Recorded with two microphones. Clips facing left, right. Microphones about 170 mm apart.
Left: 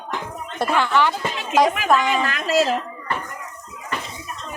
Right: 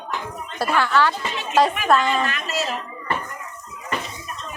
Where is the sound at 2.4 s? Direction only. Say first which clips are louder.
Left 8 dB; 90° left.